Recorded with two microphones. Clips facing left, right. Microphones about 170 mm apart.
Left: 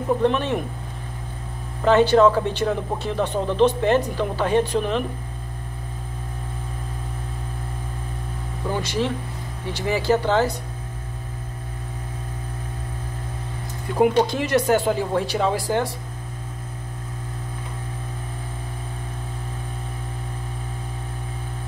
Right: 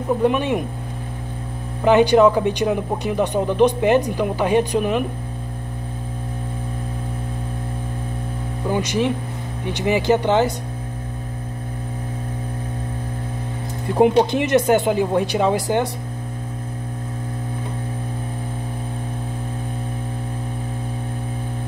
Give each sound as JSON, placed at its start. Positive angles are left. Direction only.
{"t": 0.2, "sound": "speech", "side_deg": -10}
{"t": 1.9, "sound": "speech", "side_deg": -15}
{"t": 8.6, "sound": "speech", "side_deg": -15}
{"t": 13.9, "sound": "speech", "side_deg": -25}